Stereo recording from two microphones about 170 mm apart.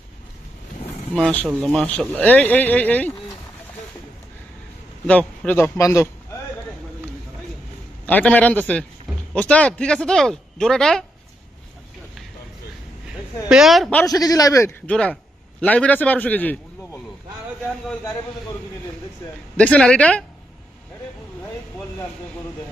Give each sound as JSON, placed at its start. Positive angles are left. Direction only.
{"t": 1.1, "sound": "speech", "side_deg": 5}
{"t": 5.0, "sound": "speech", "side_deg": 10}
{"t": 8.0, "sound": "speech", "side_deg": 10}
{"t": 13.5, "sound": "speech", "side_deg": 0}
{"t": 14.1, "sound": "a man's voice", "side_deg": 20}
{"t": 19.5, "sound": "speech", "side_deg": 5}